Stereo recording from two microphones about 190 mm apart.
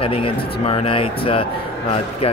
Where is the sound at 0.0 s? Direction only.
30° left (ahead or behind).